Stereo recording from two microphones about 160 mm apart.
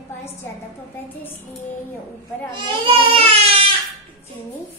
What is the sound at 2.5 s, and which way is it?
Speech, 30° right (ahead or behind).